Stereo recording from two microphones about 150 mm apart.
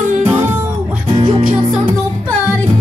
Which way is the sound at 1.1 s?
35° right (ahead or behind).